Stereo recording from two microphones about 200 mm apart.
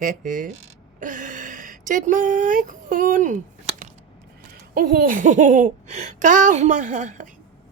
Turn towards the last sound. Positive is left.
turn(degrees=-40)  # may be behind; listen again after turning